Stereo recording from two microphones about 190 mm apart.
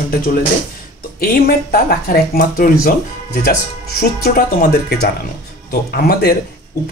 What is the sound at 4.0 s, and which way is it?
Speech, 50° left (ahead or behind).